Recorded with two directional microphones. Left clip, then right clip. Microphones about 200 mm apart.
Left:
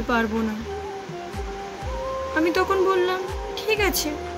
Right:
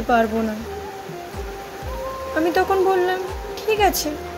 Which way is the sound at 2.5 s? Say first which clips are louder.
Right 4 dB; 20° left (ahead or behind).